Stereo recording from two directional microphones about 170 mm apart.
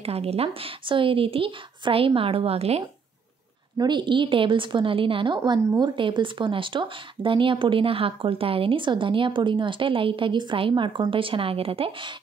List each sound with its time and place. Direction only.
0.0 s speech: 35° right (ahead or behind)
3.7 s a woman's voice: 25° right (ahead or behind)